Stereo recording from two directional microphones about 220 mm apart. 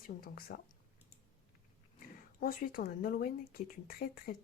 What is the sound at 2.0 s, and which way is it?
Speech, 40° left (ahead or behind).